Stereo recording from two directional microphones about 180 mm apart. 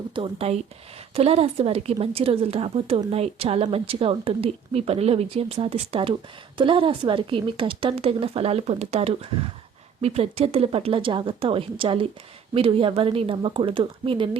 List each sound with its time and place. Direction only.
0.1 s a woman's voice: 30° right (ahead or behind)